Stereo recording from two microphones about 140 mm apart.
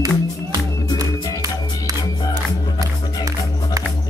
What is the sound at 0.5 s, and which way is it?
Music, 25° right (ahead or behind).